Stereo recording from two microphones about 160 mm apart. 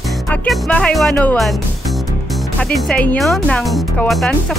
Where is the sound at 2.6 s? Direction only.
5° left (ahead or behind).